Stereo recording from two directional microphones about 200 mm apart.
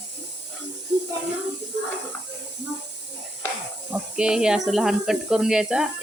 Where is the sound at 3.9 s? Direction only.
5° right (ahead or behind).